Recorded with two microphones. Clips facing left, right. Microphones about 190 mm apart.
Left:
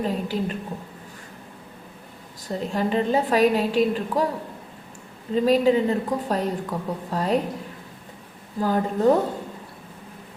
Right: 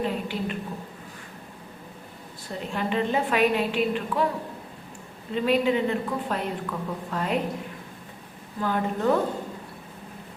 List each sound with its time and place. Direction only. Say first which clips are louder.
0.0 s a woman's voice: left 3 dB; 40° left (ahead or behind)
2.5 s a woman's voice: left 4 dB; 35° left (ahead or behind)
5.3 s a woman's voice: left 4 dB; 40° left (ahead or behind)
8.6 s a woman's voice: left 5 dB; 35° left (ahead or behind)